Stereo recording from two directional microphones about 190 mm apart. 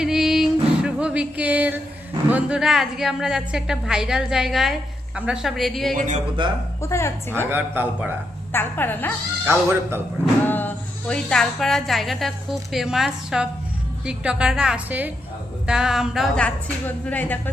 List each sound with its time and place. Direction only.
0.0 s music: centre (ahead or behind)
2.3 s a woman's voice: 5° right (ahead or behind)
6.4 s speech: 25° right (ahead or behind)
6.8 s a woman's voice: 15° left (ahead or behind)
7.5 s a man's voice: 10° right (ahead or behind)
8.5 s a woman's voice: 10° left (ahead or behind)
9.5 s a man's voice: 15° right (ahead or behind)
10.4 s a woman's voice: 10° left (ahead or behind)